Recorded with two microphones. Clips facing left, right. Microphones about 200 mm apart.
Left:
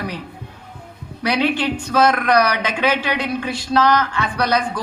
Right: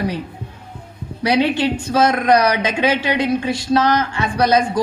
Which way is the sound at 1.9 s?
25° right (ahead or behind).